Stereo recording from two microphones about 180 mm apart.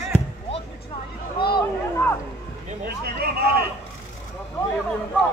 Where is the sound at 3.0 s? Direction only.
60° right (ahead or behind).